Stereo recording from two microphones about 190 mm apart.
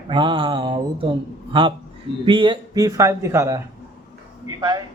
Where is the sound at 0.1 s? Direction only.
25° right (ahead or behind).